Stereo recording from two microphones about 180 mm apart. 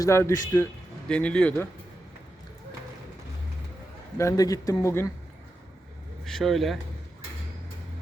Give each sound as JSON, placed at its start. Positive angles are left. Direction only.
{"t": 0.0, "sound": "speech", "side_deg": 15}
{"t": 1.0, "sound": "speech", "side_deg": 5}
{"t": 4.2, "sound": "speech", "side_deg": 15}
{"t": 6.2, "sound": "speech", "side_deg": 0}